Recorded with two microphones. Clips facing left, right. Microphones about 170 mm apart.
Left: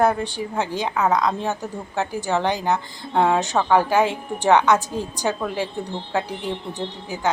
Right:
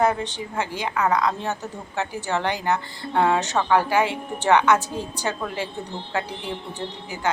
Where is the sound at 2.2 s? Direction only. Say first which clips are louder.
Left 3 dB; 15° left (ahead or behind).